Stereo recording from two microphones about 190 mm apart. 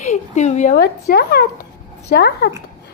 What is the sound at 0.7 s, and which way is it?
Speech, 55° left (ahead or behind).